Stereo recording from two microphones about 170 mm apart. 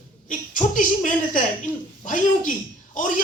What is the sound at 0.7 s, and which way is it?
A woman's voice, 50° left (ahead or behind).